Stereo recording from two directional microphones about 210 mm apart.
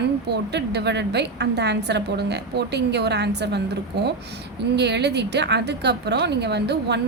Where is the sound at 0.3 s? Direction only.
50° right (ahead or behind).